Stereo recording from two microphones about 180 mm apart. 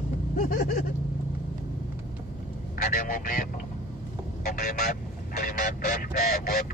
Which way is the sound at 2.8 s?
50° left (ahead or behind).